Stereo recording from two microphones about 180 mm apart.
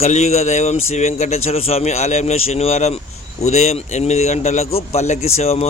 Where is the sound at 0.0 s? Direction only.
40° left (ahead or behind).